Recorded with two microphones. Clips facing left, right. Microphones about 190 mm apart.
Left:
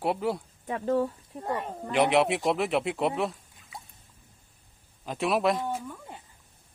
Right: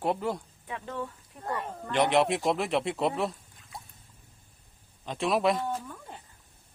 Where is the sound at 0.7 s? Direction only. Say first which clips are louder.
Left 10 dB; 40° left (ahead or behind); by 1.9 s 20° left (ahead or behind).